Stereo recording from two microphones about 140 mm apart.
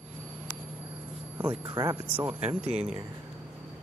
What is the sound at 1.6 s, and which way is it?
Speech, 25° right (ahead or behind).